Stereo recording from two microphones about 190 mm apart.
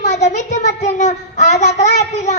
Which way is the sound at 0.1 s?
40° left (ahead or behind).